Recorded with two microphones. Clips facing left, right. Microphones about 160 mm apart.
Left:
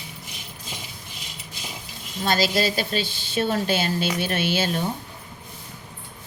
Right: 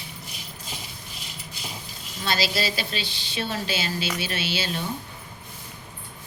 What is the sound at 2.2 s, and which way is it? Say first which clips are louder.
A woman's voice: left 4 dB; 45° left (ahead or behind).